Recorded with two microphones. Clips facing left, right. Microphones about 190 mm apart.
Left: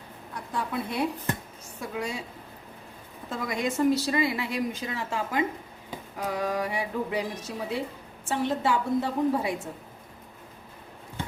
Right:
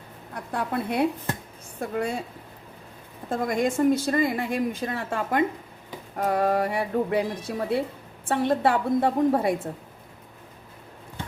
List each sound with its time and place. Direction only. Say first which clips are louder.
0.3 s a woman's voice: right 3 dB; 60° right (ahead or behind)
3.2 s a woman's voice: right 5 dB; 50° right (ahead or behind)